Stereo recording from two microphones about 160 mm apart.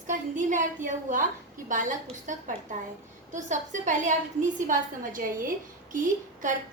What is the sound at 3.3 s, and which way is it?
A woman's voice, 50° right (ahead or behind).